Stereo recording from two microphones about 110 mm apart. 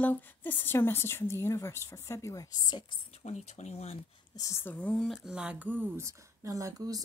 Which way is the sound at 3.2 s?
80° left.